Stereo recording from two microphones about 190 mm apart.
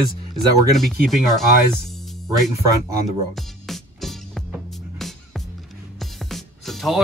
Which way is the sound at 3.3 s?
Centre (ahead or behind).